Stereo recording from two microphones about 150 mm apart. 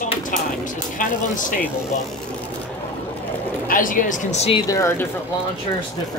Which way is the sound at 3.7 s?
65° left (ahead or behind).